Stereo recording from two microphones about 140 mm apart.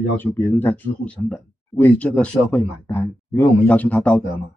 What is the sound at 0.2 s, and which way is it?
Speech, 15° left (ahead or behind).